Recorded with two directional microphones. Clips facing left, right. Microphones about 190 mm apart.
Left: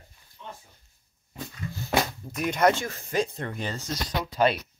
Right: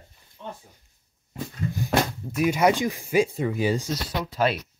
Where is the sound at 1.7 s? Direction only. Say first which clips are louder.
Right 2 dB; 10° right (ahead or behind).